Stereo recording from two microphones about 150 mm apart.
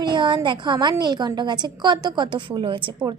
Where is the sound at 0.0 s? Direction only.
30° right (ahead or behind).